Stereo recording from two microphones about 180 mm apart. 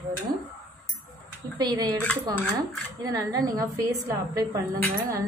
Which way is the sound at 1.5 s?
20° right (ahead or behind).